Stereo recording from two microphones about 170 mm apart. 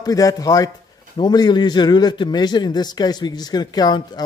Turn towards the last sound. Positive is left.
turn(degrees=25)  # may be behind; listen again after turning